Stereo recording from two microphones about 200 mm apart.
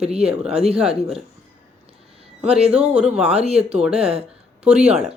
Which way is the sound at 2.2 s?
30° right (ahead or behind).